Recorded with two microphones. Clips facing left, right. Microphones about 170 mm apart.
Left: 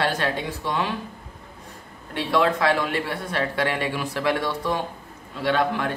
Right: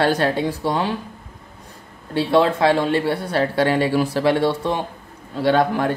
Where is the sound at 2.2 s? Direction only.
30° right (ahead or behind).